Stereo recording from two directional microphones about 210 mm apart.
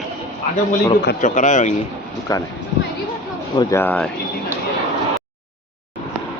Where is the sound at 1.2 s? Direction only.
35° left (ahead or behind).